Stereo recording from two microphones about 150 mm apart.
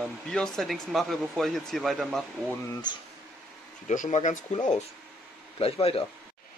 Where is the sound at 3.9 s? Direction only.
55° left (ahead or behind).